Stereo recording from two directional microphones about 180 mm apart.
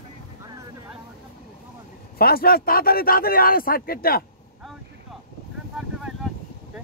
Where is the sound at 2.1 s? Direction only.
55° left (ahead or behind).